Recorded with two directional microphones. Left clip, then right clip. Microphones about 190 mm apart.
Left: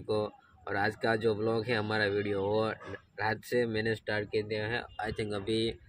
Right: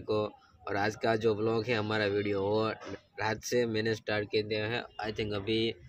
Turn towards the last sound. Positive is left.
turn(degrees=5)  # may be behind; listen again after turning